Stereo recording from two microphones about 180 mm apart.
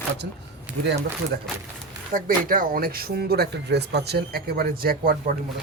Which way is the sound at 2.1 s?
50° right (ahead or behind).